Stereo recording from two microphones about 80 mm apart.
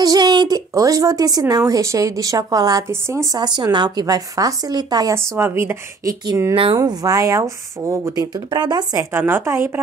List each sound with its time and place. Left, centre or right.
0.0 s a woman's voice: right
2.9 s a woman's voice: right
3.3 s a woman's voice: right
5.1 s a woman's voice: right
6.5 s speech: right
6.8 s a woman's voice: right
8.1 s a woman's voice: right
9.1 s a woman's voice: right